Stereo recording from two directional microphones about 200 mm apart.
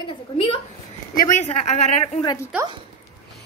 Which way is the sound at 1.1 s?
35° left (ahead or behind).